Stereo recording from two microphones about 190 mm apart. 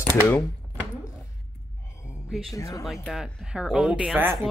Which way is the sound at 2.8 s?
Centre (ahead or behind).